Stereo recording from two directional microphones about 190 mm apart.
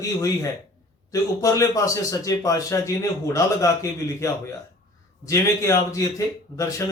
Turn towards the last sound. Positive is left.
turn(degrees=15)  # may be behind; listen again after turning